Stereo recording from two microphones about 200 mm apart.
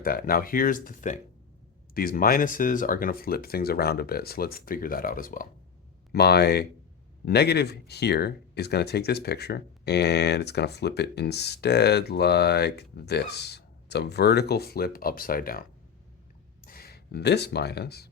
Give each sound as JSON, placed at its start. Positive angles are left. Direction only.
{"t": 0.0, "sound": "speech", "side_deg": 45}
{"t": 16.6, "sound": "speech", "side_deg": 50}